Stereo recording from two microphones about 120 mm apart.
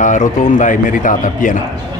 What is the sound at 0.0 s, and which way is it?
A man's voice, 90° left.